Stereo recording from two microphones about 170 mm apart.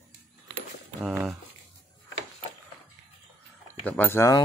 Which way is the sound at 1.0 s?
10° right (ahead or behind).